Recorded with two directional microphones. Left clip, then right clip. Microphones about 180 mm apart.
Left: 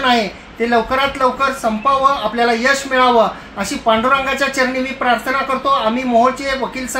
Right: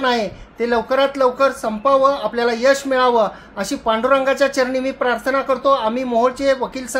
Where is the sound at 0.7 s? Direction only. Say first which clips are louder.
Left 2 dB; 85° right.